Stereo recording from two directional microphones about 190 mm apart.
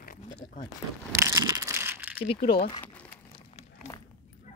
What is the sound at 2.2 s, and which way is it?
Speech, 25° left (ahead or behind).